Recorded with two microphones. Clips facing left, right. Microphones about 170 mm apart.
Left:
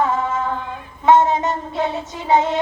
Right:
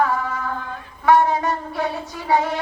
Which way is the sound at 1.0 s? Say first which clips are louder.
Left 2 dB; 20° left (ahead or behind).